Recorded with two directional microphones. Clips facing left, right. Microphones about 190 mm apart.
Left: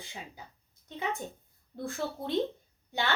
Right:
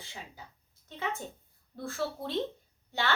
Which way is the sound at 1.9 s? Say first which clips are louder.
Right 1 dB; 15° left (ahead or behind).